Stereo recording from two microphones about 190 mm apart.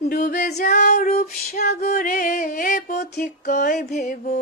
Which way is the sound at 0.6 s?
50° left (ahead or behind).